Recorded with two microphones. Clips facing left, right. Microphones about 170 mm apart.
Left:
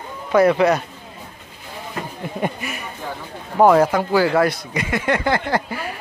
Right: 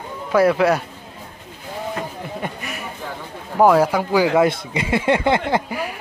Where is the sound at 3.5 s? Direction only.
5° right (ahead or behind); by 5.8 s 20° right (ahead or behind).